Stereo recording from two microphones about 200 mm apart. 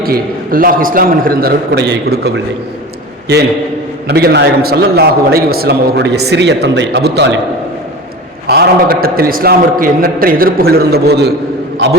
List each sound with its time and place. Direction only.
0.0 s a man's voice: 45° right (ahead or behind)
4.0 s a man's voice: 55° right (ahead or behind)
8.4 s a man's voice: 50° right (ahead or behind)